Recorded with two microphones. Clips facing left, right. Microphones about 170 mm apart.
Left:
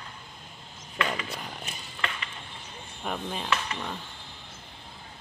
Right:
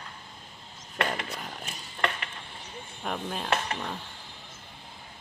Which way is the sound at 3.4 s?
50° right (ahead or behind).